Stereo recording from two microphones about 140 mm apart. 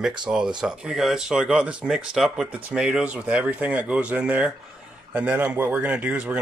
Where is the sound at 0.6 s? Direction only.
5° right (ahead or behind).